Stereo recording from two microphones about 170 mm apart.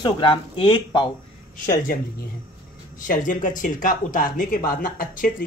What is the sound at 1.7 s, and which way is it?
Speech, 55° left (ahead or behind).